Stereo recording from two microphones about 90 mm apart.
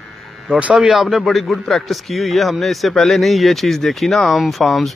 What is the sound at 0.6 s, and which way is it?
A man's voice, 5° right (ahead or behind).